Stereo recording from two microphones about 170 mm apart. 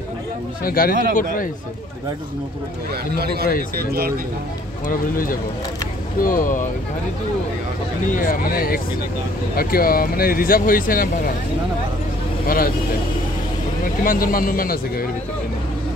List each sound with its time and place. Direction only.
0.7 s a man's voice: 60° left (ahead or behind)
2.9 s a man's voice: 65° right (ahead or behind)
4.8 s a man's voice: 55° left (ahead or behind)
8.1 s speech: 55° left (ahead or behind)
12.4 s speech: 60° left (ahead or behind)
14.0 s speech: 55° left (ahead or behind)